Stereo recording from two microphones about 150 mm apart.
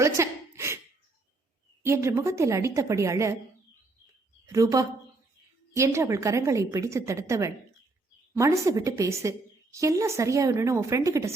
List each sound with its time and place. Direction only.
0.0 s a sound: 20° right (ahead or behind)
1.8 s a woman's voice: 20° right (ahead or behind)
4.4 s a woman's voice: 20° right (ahead or behind)